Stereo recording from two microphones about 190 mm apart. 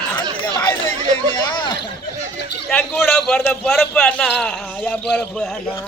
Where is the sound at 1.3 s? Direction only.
25° left (ahead or behind).